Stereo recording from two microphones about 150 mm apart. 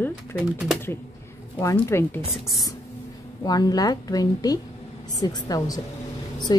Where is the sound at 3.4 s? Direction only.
25° left (ahead or behind).